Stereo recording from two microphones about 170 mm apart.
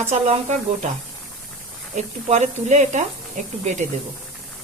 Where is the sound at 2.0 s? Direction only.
45° right (ahead or behind).